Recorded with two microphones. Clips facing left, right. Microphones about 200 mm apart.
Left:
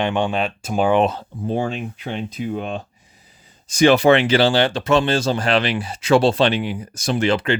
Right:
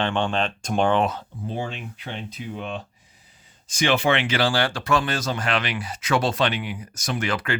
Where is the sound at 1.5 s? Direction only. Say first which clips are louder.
Left 8 dB; 50° left (ahead or behind).